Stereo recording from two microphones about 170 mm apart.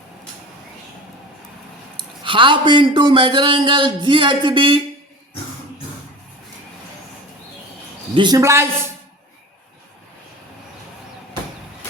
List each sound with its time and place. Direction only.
2.2 s speech: 30° right (ahead or behind)
8.1 s speech: 25° right (ahead or behind)